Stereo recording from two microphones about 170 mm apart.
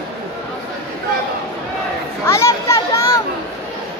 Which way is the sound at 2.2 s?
15° left (ahead or behind).